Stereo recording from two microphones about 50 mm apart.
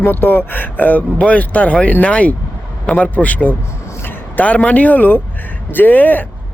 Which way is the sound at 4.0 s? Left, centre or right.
Left.